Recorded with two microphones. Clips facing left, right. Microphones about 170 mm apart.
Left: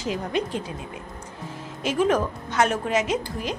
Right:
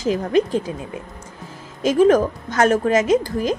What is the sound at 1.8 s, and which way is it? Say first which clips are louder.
A woman's voice: right 8 dB; 40° right (ahead or behind).